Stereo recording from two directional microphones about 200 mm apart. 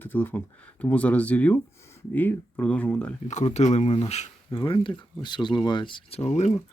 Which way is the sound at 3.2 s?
35° left (ahead or behind).